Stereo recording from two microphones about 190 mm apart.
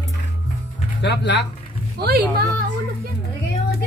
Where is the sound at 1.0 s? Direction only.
65° left (ahead or behind).